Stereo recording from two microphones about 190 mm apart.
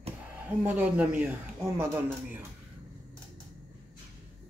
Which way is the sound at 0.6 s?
10° right (ahead or behind).